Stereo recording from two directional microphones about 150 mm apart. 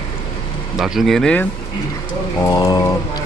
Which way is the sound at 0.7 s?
5° right (ahead or behind).